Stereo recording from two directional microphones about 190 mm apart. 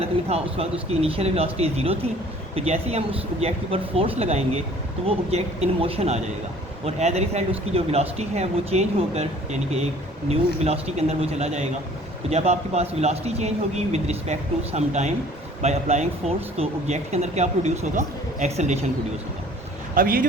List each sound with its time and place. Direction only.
0.0 s speech: 30° right (ahead or behind)
20.0 s speech: 50° right (ahead or behind)